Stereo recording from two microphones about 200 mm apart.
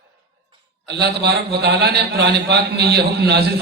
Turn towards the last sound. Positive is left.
turn(degrees=-55)  # may be behind; listen again after turning